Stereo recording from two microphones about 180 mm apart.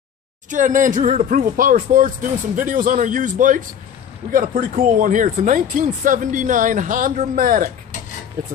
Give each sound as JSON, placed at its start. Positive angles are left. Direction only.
{"t": 0.5, "sound": "speech", "side_deg": -45}